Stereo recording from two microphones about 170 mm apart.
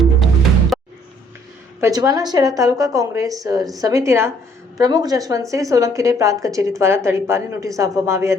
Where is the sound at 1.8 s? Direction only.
20° right (ahead or behind).